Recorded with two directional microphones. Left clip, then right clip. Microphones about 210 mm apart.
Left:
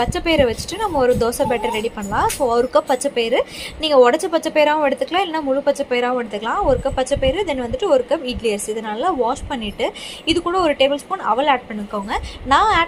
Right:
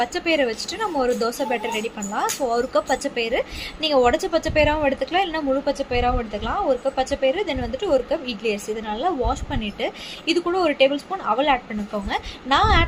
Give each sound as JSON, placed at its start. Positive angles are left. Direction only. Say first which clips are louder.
{"t": 0.0, "sound": "a woman's voice", "louder": "left 4 dB", "side_deg": 15}